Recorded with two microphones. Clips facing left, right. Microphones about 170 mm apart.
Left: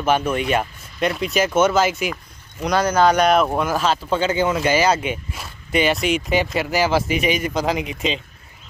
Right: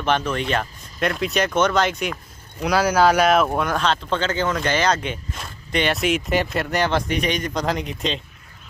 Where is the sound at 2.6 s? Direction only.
5° right (ahead or behind).